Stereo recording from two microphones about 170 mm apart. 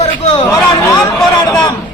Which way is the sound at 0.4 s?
15° left (ahead or behind).